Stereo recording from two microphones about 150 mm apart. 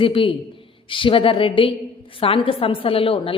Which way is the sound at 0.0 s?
35° left (ahead or behind).